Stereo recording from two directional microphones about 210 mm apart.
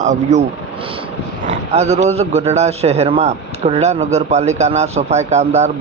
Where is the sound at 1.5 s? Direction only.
30° right (ahead or behind).